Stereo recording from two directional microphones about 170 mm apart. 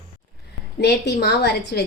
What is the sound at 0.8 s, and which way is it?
A woman's voice, 70° left (ahead or behind).